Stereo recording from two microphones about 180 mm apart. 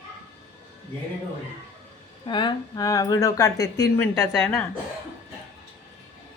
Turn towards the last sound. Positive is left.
turn(degrees=10)  # may be behind; listen again after turning